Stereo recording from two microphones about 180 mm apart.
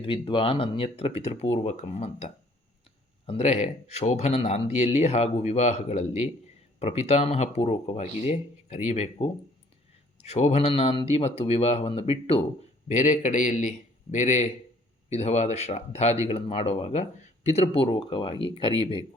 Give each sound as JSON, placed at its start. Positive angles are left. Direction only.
{"t": 0.0, "sound": "speech", "side_deg": 30}
{"t": 12.9, "sound": "a man's voice", "side_deg": 45}